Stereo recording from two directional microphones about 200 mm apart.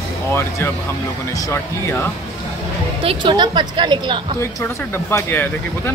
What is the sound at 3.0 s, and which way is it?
A woman's voice, 25° right (ahead or behind).